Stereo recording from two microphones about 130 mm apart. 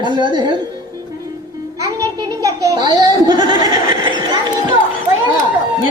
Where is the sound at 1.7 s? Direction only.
25° right (ahead or behind).